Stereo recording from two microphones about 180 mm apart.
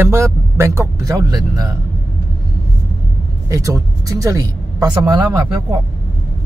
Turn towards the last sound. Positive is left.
turn(degrees=-20)  # may be behind; listen again after turning